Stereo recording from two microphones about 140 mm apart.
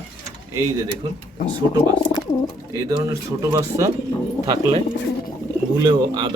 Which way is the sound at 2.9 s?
25° right (ahead or behind).